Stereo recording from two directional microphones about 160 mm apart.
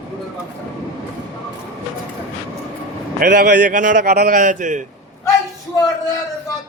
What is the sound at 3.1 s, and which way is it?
A man's voice, 60° right (ahead or behind).